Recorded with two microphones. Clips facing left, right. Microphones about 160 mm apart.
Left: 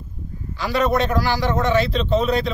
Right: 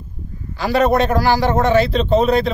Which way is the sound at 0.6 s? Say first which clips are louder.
Right 4 dB; 55° right (ahead or behind).